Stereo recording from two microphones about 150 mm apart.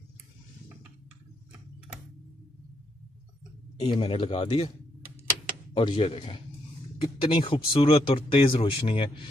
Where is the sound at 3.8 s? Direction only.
35° left (ahead or behind).